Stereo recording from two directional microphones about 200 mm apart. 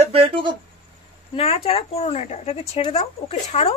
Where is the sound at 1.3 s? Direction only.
30° left (ahead or behind).